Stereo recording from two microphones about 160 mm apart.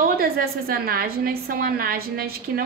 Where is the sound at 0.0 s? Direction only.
70° right (ahead or behind).